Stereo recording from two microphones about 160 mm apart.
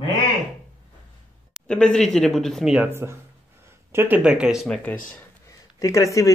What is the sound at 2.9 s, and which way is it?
Speech, 15° right (ahead or behind).